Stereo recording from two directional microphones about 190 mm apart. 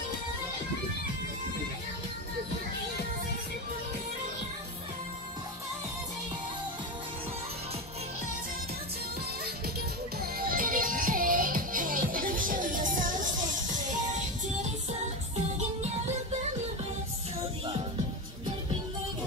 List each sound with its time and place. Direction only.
10.4 s music: 50° right (ahead or behind)